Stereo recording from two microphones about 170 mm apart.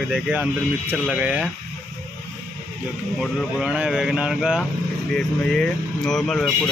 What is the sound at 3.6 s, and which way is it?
Speech, 5° right (ahead or behind).